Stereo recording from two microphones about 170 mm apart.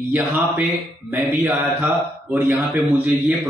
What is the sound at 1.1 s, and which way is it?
A man's voice, 15° right (ahead or behind).